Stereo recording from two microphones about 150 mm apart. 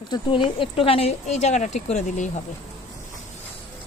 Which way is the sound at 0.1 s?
35° left (ahead or behind).